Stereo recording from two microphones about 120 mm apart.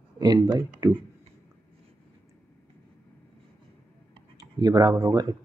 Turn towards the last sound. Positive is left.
turn(degrees=-30)  # may be behind; listen again after turning